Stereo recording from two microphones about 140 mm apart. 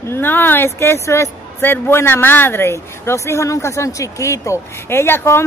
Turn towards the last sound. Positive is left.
turn(degrees=15)  # may be behind; listen again after turning